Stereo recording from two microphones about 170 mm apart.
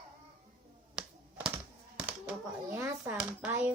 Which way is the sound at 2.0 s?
10° right (ahead or behind).